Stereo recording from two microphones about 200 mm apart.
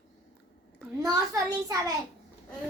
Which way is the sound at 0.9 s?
15° right (ahead or behind).